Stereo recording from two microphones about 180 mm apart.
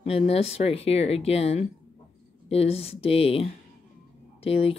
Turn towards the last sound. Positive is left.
turn(degrees=35)  # may be behind; listen again after turning